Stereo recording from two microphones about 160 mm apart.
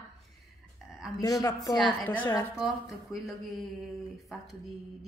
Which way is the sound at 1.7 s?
5° left (ahead or behind).